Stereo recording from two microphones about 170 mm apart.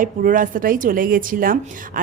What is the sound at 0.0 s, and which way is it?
A woman's voice, 50° right (ahead or behind).